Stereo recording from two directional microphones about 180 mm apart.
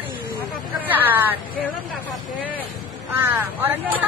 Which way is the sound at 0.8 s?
10° right (ahead or behind).